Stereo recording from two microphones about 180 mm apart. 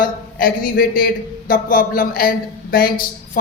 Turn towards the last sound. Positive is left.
turn(degrees=50)  # may be behind; listen again after turning